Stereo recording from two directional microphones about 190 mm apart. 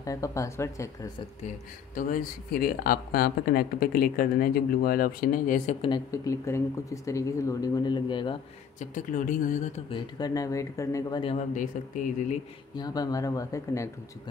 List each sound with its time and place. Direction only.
0.0 s speech: 15° left (ahead or behind)
2.0 s speech: 45° left (ahead or behind)
5.8 s speech: 20° left (ahead or behind)
8.7 s speech: 45° left (ahead or behind)
9.8 s speech: 25° left (ahead or behind)
12.7 s speech: 20° left (ahead or behind)